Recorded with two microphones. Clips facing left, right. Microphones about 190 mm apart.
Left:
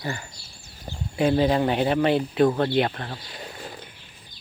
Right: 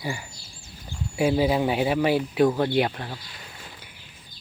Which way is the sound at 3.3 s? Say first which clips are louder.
Left 7 dB; 40° left (ahead or behind).